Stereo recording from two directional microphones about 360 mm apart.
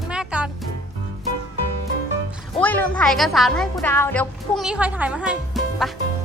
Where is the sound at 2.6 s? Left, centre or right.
Centre.